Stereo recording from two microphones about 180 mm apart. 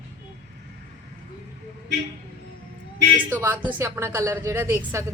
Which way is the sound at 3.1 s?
10° right (ahead or behind).